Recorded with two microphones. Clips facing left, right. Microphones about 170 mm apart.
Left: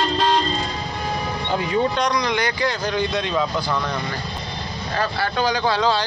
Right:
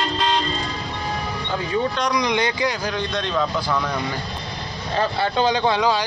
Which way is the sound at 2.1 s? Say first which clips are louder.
Right 1 dB; 15° right (ahead or behind).